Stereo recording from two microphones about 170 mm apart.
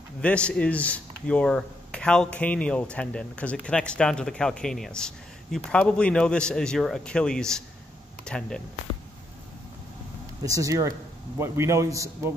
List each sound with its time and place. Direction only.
0.2 s speech: 5° left (ahead or behind)
10.4 s a man's voice: 20° right (ahead or behind)